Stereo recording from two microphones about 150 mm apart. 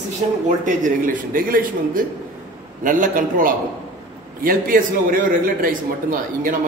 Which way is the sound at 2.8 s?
60° right (ahead or behind).